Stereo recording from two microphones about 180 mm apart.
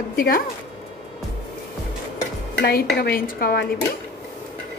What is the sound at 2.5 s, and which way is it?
A woman's voice, 60° left (ahead or behind).